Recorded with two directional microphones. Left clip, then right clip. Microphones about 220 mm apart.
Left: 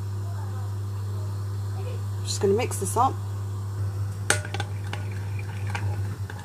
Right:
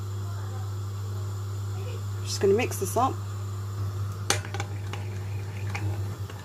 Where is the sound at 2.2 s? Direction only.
15° right (ahead or behind).